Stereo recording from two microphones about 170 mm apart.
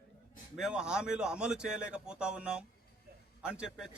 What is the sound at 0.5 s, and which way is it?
A man's voice, 5° right (ahead or behind).